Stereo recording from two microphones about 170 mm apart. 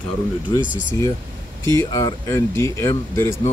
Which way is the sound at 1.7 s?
20° left (ahead or behind).